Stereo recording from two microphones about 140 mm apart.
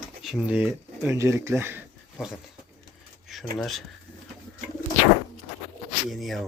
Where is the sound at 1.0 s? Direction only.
20° right (ahead or behind).